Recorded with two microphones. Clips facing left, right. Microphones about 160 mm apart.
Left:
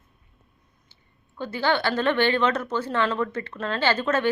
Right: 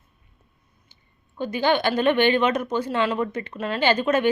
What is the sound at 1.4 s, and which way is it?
A woman's voice, 15° right (ahead or behind).